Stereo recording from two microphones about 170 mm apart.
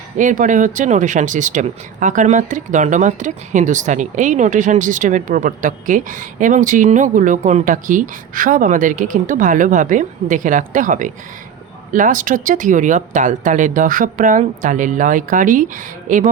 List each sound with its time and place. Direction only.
0.2 s speech: 50° right (ahead or behind)